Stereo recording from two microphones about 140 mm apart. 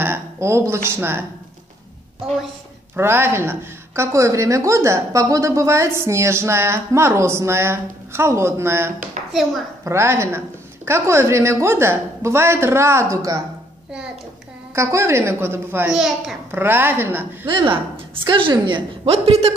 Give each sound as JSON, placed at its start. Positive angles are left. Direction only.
{"t": 0.0, "sound": "a sound", "side_deg": -20}
{"t": 0.8, "sound": "a woman's voice", "side_deg": -15}
{"t": 3.0, "sound": "a woman's voice", "side_deg": -15}
{"t": 14.8, "sound": "a woman's voice", "side_deg": -20}
{"t": 15.9, "sound": "a child's voice", "side_deg": -5}
{"t": 16.5, "sound": "a woman's voice", "side_deg": -15}
{"t": 17.5, "sound": "a woman's voice", "side_deg": -35}
{"t": 19.1, "sound": "a man's voice", "side_deg": -50}